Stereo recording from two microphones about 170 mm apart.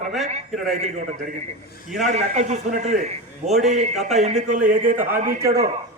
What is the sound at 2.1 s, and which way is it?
A man's voice, 45° right (ahead or behind).